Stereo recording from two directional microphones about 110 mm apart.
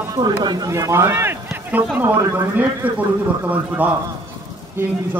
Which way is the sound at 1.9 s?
25° right (ahead or behind).